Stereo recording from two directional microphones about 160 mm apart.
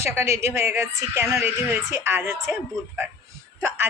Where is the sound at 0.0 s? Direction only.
15° right (ahead or behind).